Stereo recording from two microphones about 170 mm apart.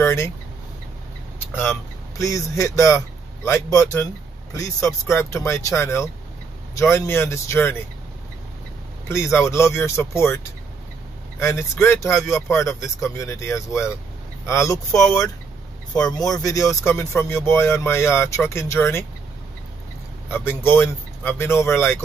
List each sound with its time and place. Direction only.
0.0 s vehicle: 15° left (ahead or behind)
1.6 s speech: 15° left (ahead or behind)
9.1 s speech: 15° left (ahead or behind)
20.2 s speech: 15° left (ahead or behind)